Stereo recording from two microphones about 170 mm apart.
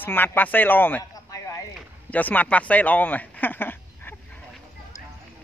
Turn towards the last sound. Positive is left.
turn(degrees=10)  # may be behind; listen again after turning